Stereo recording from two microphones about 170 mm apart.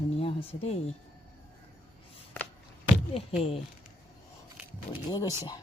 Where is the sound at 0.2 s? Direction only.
35° left (ahead or behind).